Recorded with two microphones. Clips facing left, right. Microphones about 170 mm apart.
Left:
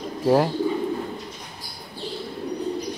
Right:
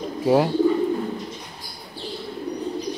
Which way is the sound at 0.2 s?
Centre (ahead or behind).